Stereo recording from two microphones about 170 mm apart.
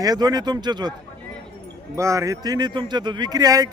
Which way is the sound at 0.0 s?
20° right (ahead or behind).